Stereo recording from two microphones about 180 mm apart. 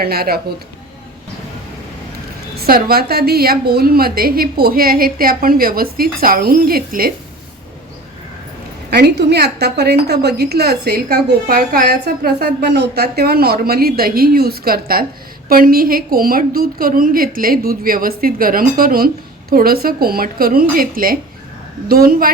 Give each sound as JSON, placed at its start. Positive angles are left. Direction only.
{"t": 0.0, "sound": "a woman's voice", "side_deg": -60}
{"t": 2.6, "sound": "a woman's voice", "side_deg": -55}
{"t": 8.9, "sound": "a woman's voice", "side_deg": -65}